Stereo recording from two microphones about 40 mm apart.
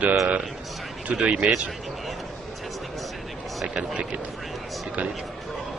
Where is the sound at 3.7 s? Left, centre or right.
Right.